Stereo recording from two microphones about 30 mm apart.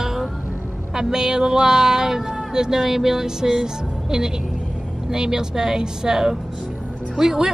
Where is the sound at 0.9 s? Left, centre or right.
Right.